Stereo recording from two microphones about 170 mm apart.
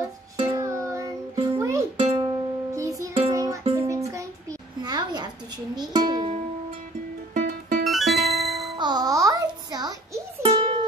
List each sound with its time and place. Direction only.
0.6 s music: 15° right (ahead or behind)
4.1 s a sound: 20° right (ahead or behind)
5.8 s music: 25° right (ahead or behind)
7.3 s music: 55° right (ahead or behind)
7.8 s music: centre (ahead or behind)
8.7 s music: 25° right (ahead or behind)
10.4 s music: 40° right (ahead or behind)